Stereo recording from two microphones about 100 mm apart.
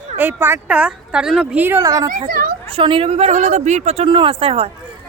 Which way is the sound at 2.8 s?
65° right (ahead or behind).